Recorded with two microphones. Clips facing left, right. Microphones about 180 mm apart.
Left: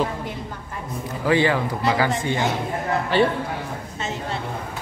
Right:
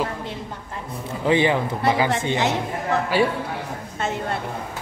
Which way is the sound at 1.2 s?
20° right (ahead or behind).